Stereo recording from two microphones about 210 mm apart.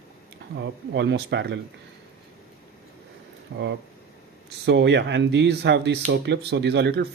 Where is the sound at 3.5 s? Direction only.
60° right (ahead or behind).